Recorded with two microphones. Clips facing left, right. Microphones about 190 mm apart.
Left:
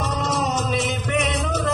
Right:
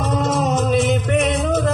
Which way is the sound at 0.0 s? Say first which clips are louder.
Right 5 dB; 50° right (ahead or behind).